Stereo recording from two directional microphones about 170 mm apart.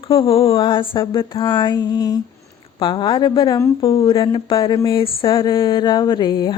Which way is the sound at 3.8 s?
35° left (ahead or behind).